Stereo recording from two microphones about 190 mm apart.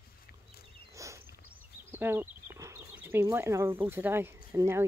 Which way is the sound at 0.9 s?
15° right (ahead or behind).